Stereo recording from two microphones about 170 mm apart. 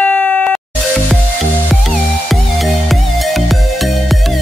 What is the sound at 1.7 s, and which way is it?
Music, centre (ahead or behind).